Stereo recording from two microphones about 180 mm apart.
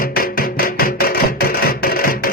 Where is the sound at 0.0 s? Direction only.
55° left (ahead or behind).